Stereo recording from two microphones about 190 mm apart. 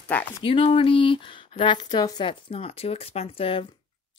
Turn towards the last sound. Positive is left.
turn(degrees=30)  # may be behind; listen again after turning